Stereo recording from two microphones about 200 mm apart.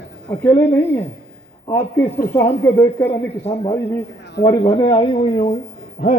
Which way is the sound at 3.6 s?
15° left (ahead or behind).